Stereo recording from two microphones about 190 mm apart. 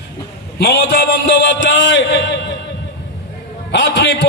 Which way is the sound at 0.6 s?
60° left (ahead or behind).